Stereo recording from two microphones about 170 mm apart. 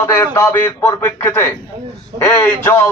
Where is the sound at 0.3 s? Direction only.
10° left (ahead or behind).